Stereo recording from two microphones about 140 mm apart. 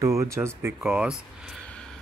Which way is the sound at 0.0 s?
20° right (ahead or behind).